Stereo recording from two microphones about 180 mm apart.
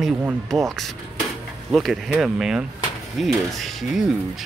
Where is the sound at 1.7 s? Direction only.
Centre (ahead or behind).